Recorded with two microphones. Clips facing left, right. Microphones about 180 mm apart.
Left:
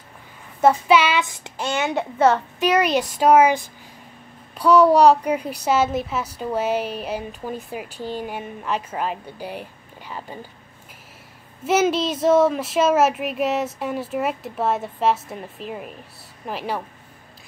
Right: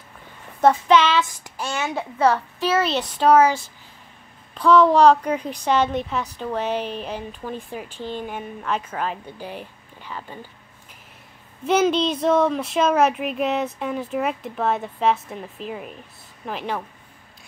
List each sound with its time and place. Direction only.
0.6 s a child's voice: 10° left (ahead or behind)
1.2 s a child's voice: 20° left (ahead or behind)
11.6 s speech: 5° left (ahead or behind)